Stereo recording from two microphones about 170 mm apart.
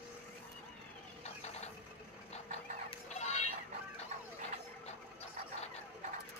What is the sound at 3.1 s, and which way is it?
Music, 40° left (ahead or behind).